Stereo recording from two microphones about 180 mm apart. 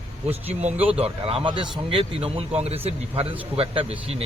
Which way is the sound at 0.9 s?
35° right (ahead or behind).